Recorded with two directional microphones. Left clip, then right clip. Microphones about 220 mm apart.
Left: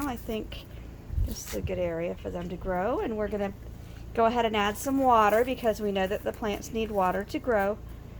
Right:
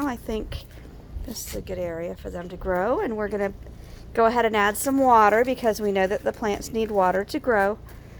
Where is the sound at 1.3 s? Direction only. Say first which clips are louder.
Right 1 dB; 35° right (ahead or behind).